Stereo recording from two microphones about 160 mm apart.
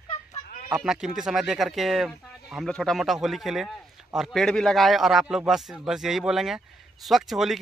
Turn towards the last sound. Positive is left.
turn(degrees=0)  # may be behind; listen again after turning